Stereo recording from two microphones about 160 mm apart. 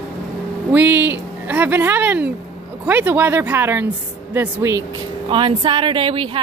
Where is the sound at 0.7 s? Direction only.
10° right (ahead or behind).